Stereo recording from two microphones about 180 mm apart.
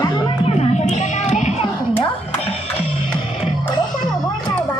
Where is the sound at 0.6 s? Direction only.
40° left (ahead or behind).